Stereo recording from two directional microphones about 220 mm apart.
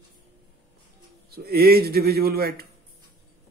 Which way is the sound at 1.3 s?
45° right (ahead or behind).